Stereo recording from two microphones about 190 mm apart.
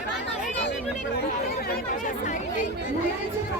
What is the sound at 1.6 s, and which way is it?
Chatter, 45° left (ahead or behind).